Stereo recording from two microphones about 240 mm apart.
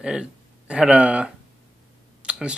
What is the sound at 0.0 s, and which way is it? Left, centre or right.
Speech, centre.